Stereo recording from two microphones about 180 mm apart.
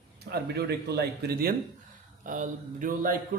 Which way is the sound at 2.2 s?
45° right (ahead or behind).